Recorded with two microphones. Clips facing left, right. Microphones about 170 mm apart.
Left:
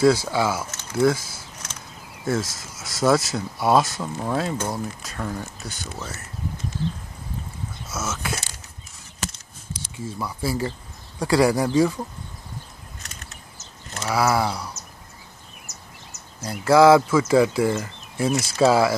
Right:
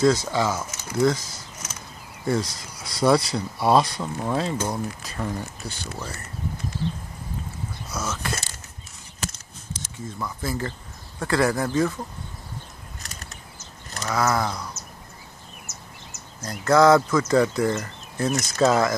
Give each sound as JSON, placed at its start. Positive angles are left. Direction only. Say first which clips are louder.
{"t": 0.0, "sound": "speech", "louder": "left 2 dB", "side_deg": 10}
{"t": 7.9, "sound": "speech", "louder": "left 1 dB", "side_deg": 5}
{"t": 10.0, "sound": "speech", "louder": "left 3 dB", "side_deg": 10}
{"t": 13.0, "sound": "a sound", "louder": "right 1 dB", "side_deg": -40}
{"t": 14.0, "sound": "speech", "louder": "left 2 dB", "side_deg": 10}
{"t": 16.3, "sound": "speech", "louder": "left 2 dB", "side_deg": 10}